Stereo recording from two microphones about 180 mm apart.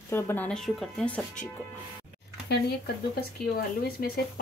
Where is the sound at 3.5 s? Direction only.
55° left (ahead or behind).